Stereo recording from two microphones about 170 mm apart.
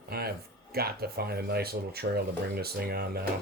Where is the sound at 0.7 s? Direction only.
65° right (ahead or behind).